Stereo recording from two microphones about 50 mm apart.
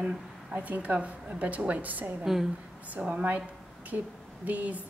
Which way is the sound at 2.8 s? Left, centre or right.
Right.